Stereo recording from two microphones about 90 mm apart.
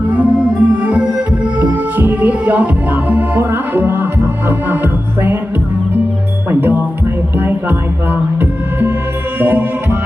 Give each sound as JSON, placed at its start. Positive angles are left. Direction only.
{"t": 0.1, "sound": "organ", "side_deg": -15}
{"t": 1.5, "sound": "music", "side_deg": -20}
{"t": 6.5, "sound": "music", "side_deg": -25}
{"t": 9.4, "sound": "music", "side_deg": -20}